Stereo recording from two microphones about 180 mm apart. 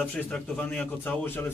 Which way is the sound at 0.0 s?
5° left (ahead or behind).